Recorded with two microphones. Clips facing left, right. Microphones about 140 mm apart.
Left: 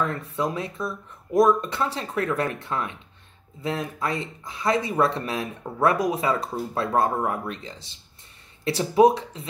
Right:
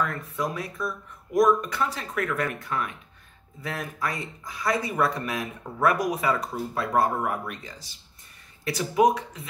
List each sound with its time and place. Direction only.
0.0 s speech: 30° left (ahead or behind)